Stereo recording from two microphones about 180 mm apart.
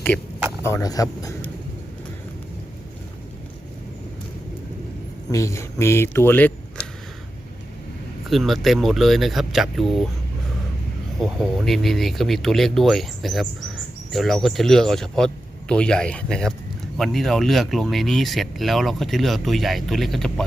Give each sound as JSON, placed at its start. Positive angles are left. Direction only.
{"t": 0.6, "sound": "speech", "side_deg": 15}
{"t": 5.3, "sound": "speech", "side_deg": 15}
{"t": 8.3, "sound": "speech", "side_deg": 0}
{"t": 11.2, "sound": "speech", "side_deg": 0}